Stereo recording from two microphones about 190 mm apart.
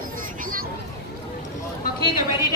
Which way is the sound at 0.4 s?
45° right (ahead or behind).